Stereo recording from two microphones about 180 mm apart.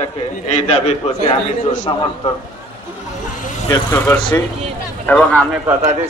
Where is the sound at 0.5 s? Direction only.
35° left (ahead or behind).